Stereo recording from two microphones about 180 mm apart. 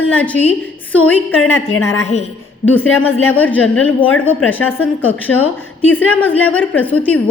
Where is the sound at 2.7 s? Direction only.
10° left (ahead or behind).